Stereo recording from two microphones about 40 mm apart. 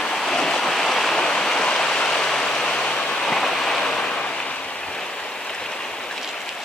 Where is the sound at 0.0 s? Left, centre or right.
Centre.